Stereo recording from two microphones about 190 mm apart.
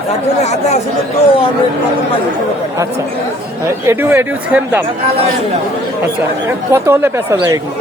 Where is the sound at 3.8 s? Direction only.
10° right (ahead or behind).